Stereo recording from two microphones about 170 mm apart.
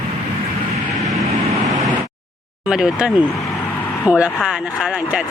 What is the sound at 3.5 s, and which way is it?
Vehicle, 10° left (ahead or behind).